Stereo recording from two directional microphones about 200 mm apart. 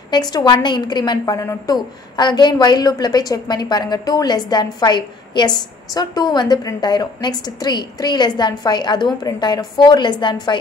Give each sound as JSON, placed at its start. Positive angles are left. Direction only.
{"t": 0.1, "sound": "a woman's voice", "side_deg": 20}